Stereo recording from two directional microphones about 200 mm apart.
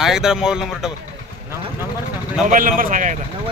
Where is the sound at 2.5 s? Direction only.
45° right (ahead or behind).